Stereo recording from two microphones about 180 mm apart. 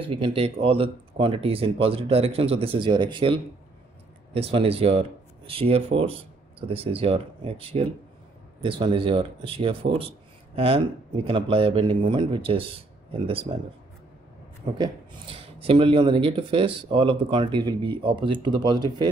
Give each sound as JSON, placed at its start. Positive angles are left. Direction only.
{"t": 0.0, "sound": "speech", "side_deg": -30}
{"t": 14.8, "sound": "speech", "side_deg": -30}